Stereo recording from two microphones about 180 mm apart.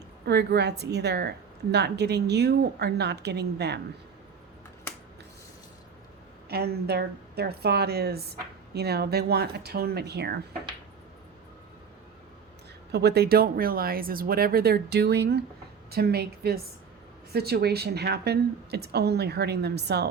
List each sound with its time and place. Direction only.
0.3 s a woman's voice: 70° right (ahead or behind)
6.5 s a woman's voice: 60° right (ahead or behind)
12.9 s a woman's voice: 65° right (ahead or behind)